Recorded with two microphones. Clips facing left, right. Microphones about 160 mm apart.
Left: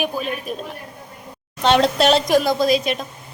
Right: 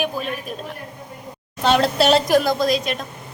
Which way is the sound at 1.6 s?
5° right (ahead or behind).